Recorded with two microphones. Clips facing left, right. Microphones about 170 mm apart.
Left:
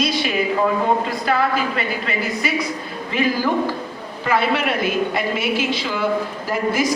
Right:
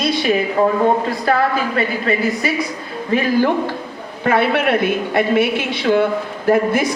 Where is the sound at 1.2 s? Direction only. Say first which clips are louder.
Right 3 dB; 50° right (ahead or behind).